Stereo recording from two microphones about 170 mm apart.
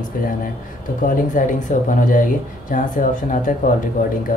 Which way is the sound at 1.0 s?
50° left (ahead or behind).